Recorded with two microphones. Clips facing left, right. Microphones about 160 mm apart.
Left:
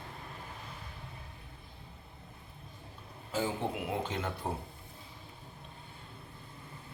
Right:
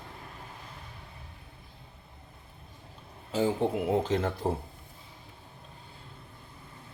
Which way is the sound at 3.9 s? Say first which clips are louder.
Right 8 dB; 40° right (ahead or behind).